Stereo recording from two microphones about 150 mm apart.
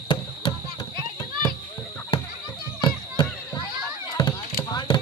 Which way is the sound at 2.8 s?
30° left (ahead or behind).